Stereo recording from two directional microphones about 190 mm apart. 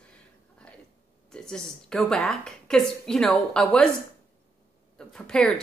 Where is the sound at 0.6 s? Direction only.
5° left (ahead or behind).